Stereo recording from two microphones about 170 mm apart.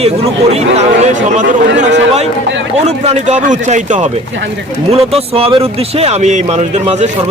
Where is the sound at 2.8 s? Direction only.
40° right (ahead or behind).